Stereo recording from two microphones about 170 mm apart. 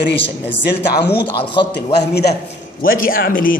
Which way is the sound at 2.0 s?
75° left (ahead or behind).